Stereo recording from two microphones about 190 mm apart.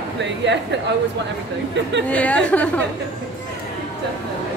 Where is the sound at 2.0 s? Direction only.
5° left (ahead or behind).